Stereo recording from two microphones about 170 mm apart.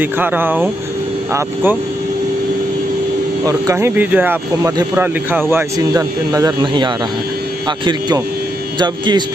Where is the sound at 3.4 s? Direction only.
20° right (ahead or behind).